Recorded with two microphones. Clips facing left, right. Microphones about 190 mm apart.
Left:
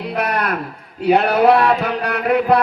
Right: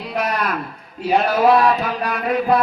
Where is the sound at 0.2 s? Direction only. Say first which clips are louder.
Left 1 dB; 60° left (ahead or behind).